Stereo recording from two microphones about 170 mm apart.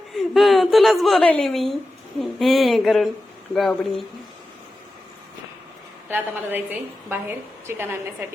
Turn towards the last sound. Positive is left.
turn(degrees=-15)  # may be behind; listen again after turning